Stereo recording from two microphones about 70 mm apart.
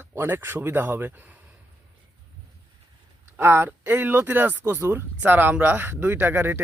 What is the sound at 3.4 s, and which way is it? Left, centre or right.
Speech, right.